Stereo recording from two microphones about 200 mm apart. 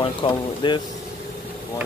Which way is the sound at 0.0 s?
25° left (ahead or behind).